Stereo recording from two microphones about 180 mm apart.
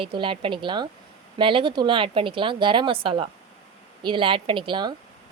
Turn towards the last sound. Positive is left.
turn(degrees=-25)  # may be behind; listen again after turning